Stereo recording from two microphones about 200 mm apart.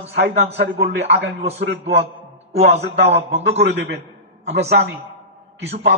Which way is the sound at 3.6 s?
60° right (ahead or behind).